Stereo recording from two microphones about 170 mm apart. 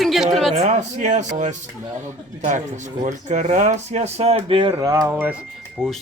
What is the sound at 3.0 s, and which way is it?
Speech, 45° right (ahead or behind).